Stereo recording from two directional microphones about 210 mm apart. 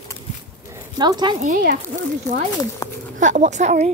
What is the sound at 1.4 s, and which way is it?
Speech, 45° right (ahead or behind).